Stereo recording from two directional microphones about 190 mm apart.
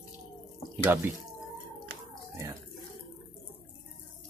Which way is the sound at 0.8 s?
15° right (ahead or behind).